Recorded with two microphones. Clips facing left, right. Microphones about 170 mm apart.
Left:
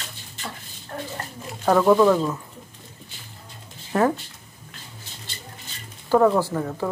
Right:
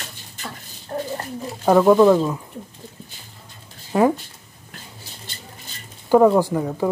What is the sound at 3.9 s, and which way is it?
Speech, 15° right (ahead or behind).